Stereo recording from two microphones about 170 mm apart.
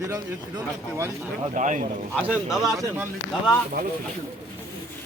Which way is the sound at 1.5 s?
50° right (ahead or behind).